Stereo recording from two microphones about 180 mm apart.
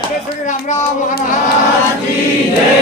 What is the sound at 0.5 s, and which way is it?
Speech, 45° left (ahead or behind).